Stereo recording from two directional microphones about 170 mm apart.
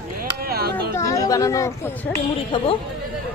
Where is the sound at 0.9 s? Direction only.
20° left (ahead or behind).